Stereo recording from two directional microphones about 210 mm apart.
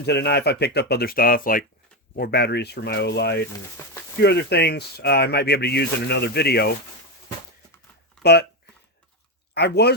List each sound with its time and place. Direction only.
0.0 s speech: 50° left (ahead or behind)
3.8 s speech: 15° left (ahead or behind)
4.2 s speech: 50° left (ahead or behind)
8.2 s speech: 50° left (ahead or behind)
9.6 s speech: 50° left (ahead or behind)